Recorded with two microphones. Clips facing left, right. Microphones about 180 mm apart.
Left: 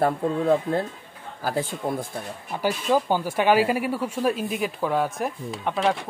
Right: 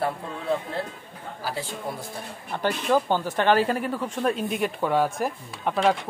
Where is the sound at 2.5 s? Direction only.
10° left (ahead or behind).